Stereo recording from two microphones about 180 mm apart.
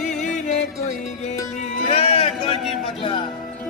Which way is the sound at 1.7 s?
35° left (ahead or behind).